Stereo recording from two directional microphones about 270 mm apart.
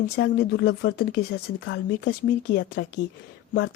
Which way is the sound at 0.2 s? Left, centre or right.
Left.